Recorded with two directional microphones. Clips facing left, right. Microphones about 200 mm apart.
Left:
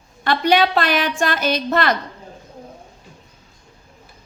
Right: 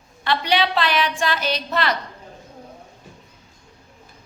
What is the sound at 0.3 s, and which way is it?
A woman's voice, 45° left (ahead or behind).